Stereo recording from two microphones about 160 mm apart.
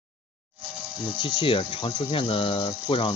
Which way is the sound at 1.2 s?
30° left (ahead or behind).